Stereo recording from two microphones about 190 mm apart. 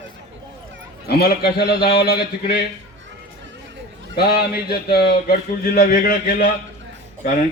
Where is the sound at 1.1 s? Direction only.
55° left (ahead or behind).